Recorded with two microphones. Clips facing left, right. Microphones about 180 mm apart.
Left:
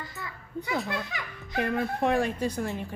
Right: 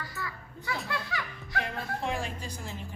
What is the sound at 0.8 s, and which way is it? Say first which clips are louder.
Speech: left 2 dB; 20° left (ahead or behind).